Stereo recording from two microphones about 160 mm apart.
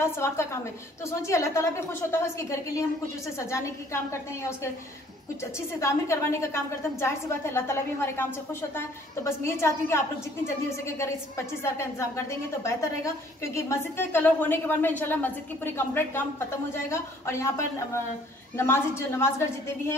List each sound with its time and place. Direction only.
0.0 s a woman's voice: 15° left (ahead or behind)
5.8 s a woman's voice: 15° left (ahead or behind)